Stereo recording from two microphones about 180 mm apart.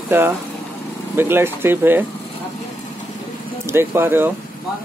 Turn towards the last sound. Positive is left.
turn(degrees=-10)  # may be behind; listen again after turning